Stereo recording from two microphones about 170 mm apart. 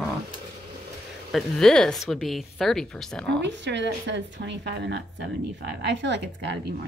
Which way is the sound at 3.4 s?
90° right.